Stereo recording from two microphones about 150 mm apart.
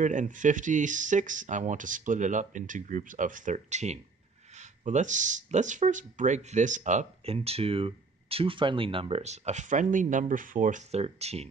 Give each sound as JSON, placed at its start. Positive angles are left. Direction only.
{"t": 0.0, "sound": "speech", "side_deg": -55}